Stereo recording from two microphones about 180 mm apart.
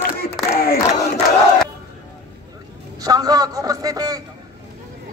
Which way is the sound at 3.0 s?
20° right (ahead or behind).